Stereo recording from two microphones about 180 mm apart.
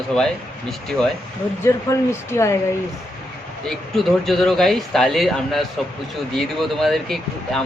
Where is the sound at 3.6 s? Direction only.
Centre (ahead or behind).